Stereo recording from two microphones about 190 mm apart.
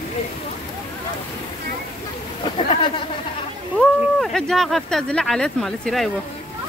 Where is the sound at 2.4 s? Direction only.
25° left (ahead or behind).